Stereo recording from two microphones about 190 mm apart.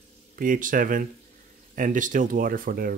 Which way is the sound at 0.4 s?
45° right (ahead or behind).